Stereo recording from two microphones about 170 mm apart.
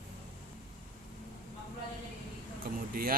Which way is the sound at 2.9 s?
60° right (ahead or behind).